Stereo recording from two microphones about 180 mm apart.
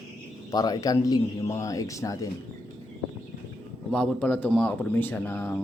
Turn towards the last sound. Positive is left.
turn(degrees=10)  # may be behind; listen again after turning